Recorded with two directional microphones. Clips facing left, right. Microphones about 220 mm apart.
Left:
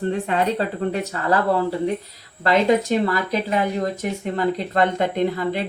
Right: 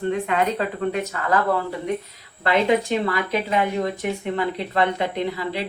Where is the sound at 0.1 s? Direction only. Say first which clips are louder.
Even; 35° left (ahead or behind).